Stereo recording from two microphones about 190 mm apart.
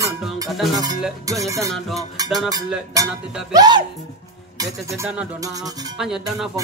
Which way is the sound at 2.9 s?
20° right (ahead or behind).